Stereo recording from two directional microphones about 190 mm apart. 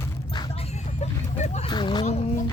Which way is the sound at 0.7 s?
35° left (ahead or behind).